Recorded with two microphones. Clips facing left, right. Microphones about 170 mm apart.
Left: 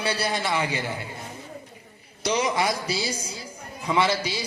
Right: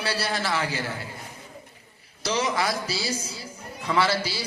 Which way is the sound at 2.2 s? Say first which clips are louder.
Left 2 dB; centre (ahead or behind).